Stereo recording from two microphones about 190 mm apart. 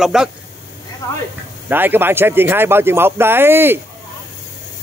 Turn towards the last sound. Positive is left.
turn(degrees=-10)  # may be behind; listen again after turning